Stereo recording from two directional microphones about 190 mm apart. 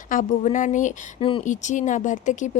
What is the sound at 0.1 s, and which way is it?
Speech, 45° left (ahead or behind).